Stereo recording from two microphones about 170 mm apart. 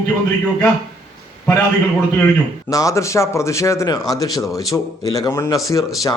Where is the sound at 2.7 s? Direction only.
20° left (ahead or behind).